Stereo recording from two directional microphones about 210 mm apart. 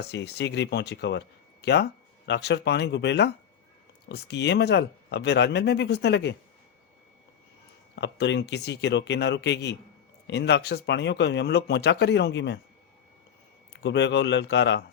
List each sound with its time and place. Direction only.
0.0 s speech: 55° left (ahead or behind)
7.9 s speech: 55° left (ahead or behind)
13.8 s speech: 55° left (ahead or behind)